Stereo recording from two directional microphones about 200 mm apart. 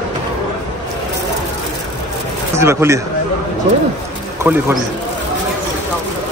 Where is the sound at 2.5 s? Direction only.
15° right (ahead or behind).